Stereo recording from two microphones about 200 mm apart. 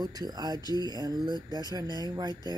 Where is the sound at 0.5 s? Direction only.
20° left (ahead or behind).